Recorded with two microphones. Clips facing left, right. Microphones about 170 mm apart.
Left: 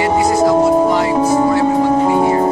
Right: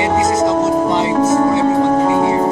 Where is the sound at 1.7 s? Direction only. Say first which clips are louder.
Even; centre (ahead or behind).